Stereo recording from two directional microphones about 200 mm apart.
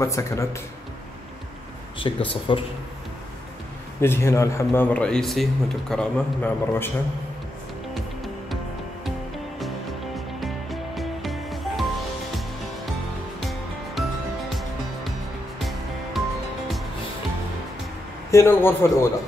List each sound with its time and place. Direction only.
0.0 s speech: 15° left (ahead or behind)
2.0 s speech: 25° left (ahead or behind)
4.0 s speech: 10° left (ahead or behind)
7.9 s music: centre (ahead or behind)
10.1 s music: centre (ahead or behind)
18.3 s speech: 10° left (ahead or behind)